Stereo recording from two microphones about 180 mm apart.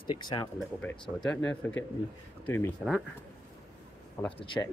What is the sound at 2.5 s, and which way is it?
Speech, 10° left (ahead or behind).